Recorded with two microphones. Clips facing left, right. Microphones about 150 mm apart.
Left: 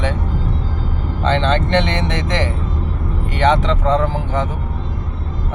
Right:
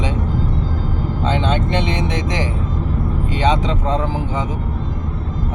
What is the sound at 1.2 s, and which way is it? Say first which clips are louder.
Speech: left 3 dB; 10° right (ahead or behind).